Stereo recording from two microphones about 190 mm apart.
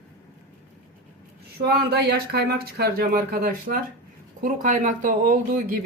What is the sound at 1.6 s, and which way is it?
Speech, 60° right (ahead or behind).